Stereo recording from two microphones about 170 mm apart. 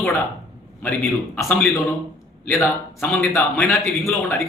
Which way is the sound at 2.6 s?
10° left (ahead or behind).